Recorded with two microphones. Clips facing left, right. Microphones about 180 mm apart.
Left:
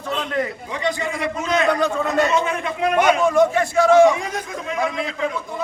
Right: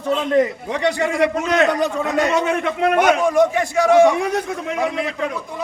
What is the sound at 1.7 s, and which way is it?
Speech, 15° right (ahead or behind).